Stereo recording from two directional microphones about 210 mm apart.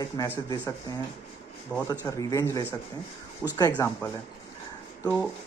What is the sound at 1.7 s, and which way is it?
Speech, 5° left (ahead or behind).